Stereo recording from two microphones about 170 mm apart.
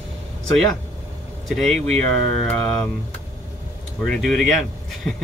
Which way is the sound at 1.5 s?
Centre (ahead or behind).